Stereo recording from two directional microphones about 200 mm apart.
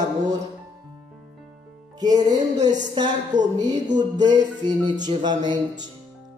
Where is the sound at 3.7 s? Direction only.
35° right (ahead or behind).